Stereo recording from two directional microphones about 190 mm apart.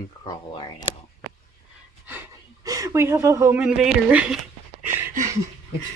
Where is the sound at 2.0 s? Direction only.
15° right (ahead or behind).